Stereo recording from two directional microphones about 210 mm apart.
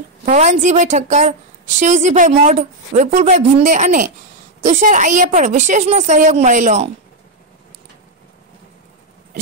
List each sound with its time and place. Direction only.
0.2 s a woman's voice: 35° right (ahead or behind)